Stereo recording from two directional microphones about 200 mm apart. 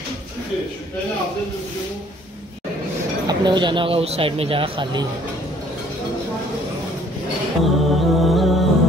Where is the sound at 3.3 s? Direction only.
20° right (ahead or behind).